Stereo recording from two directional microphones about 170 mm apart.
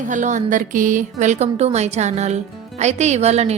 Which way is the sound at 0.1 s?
50° right (ahead or behind).